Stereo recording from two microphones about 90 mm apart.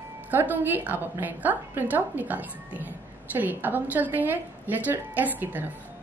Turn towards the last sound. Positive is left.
turn(degrees=-20)  # may be behind; listen again after turning